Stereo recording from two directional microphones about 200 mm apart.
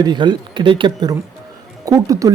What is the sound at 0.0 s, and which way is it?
Speech, 20° right (ahead or behind).